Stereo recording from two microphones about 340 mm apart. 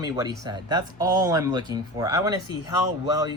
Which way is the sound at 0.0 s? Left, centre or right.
Centre.